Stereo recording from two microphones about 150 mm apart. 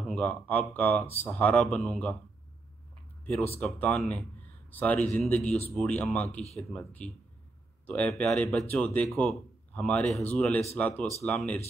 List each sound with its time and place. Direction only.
0.0 s speech: 10° left (ahead or behind)
3.5 s speech: 10° left (ahead or behind)